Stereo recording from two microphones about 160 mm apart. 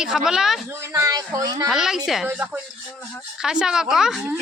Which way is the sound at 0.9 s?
20° right (ahead or behind).